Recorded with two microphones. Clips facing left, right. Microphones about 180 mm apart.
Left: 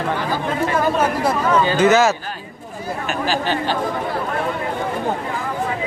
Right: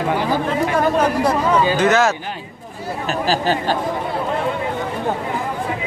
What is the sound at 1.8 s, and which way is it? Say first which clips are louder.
Speech: left 2 dB; 5° left (ahead or behind).